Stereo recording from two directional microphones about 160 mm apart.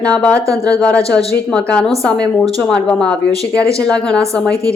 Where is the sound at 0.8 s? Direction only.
10° left (ahead or behind).